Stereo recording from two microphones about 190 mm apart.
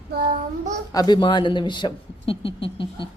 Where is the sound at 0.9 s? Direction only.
20° left (ahead or behind).